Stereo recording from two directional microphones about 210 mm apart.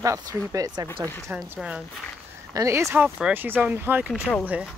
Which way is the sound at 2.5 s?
15° right (ahead or behind).